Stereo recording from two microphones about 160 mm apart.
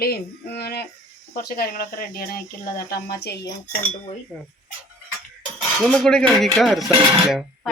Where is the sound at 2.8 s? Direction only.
85° left.